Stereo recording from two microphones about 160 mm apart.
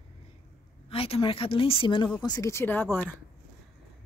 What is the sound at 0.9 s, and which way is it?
A woman's voice, 35° left (ahead or behind).